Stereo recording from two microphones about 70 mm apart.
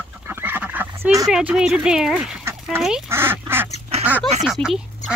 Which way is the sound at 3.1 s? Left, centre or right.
Right.